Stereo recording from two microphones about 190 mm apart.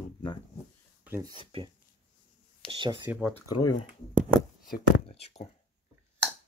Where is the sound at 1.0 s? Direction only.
15° right (ahead or behind).